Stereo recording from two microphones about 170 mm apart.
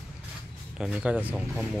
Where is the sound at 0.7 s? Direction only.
5° right (ahead or behind).